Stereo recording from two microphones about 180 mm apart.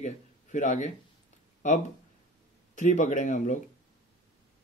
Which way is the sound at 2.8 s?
45° left (ahead or behind).